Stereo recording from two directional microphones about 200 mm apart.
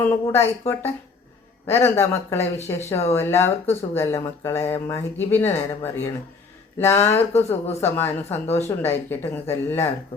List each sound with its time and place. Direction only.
0.0 s speech: 10° left (ahead or behind)